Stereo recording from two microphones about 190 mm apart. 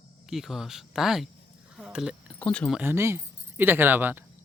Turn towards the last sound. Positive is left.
turn(degrees=-10)  # may be behind; listen again after turning